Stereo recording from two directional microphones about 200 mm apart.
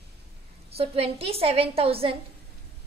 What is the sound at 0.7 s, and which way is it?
A woman's voice, 30° right (ahead or behind).